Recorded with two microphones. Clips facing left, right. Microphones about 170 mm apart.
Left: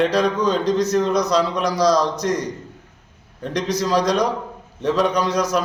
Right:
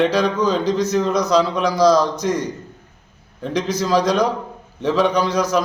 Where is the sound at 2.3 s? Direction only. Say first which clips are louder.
Right 1 dB; 30° right (ahead or behind).